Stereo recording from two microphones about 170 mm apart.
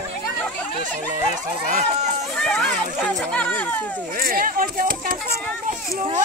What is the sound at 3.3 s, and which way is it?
Speech, 5° left (ahead or behind).